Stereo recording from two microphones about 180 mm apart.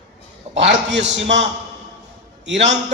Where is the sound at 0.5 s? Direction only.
85° right.